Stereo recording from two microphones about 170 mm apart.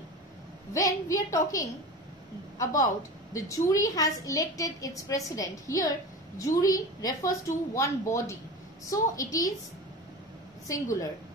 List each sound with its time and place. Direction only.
0.7 s a woman's voice: 20° left (ahead or behind)
10.7 s a woman's voice: 20° left (ahead or behind)